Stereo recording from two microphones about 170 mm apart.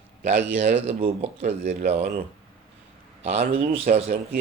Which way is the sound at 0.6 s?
45° right (ahead or behind).